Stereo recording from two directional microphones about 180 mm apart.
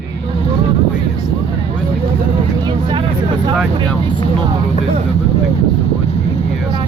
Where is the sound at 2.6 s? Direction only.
25° right (ahead or behind).